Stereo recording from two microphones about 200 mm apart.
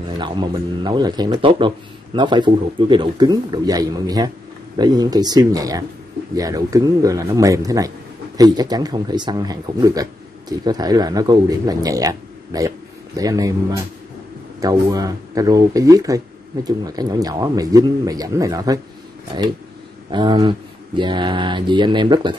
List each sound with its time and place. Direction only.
0.2 s a man's voice: 20° right (ahead or behind)
20.1 s speech: 25° right (ahead or behind)